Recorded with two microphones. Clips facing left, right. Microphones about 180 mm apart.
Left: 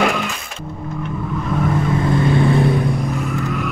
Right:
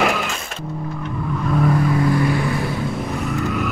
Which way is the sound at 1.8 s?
25° left (ahead or behind).